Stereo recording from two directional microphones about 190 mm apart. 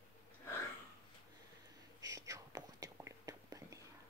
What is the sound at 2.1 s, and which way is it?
Whispering, 15° right (ahead or behind).